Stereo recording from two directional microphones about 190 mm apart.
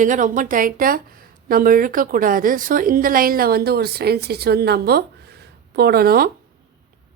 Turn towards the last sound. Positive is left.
turn(degrees=-50)  # may be behind; listen again after turning